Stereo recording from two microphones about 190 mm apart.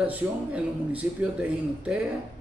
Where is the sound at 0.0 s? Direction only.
10° right (ahead or behind).